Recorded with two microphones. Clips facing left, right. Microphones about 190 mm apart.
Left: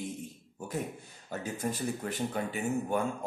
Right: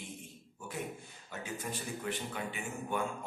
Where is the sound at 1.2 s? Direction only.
40° left (ahead or behind).